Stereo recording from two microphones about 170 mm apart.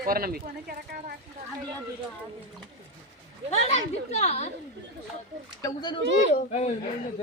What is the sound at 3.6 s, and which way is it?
Speech, 40° left (ahead or behind).